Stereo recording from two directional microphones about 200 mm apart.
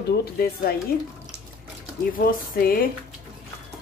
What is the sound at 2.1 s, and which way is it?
Speech, 45° left (ahead or behind).